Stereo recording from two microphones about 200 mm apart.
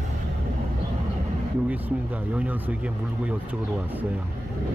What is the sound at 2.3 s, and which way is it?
A man's voice, 10° right (ahead or behind).